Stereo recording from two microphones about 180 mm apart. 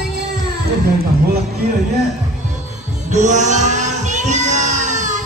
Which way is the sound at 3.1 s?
40° right (ahead or behind).